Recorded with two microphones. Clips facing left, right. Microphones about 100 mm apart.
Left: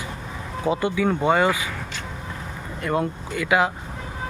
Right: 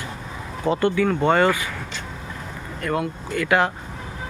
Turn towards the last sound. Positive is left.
turn(degrees=10)  # may be behind; listen again after turning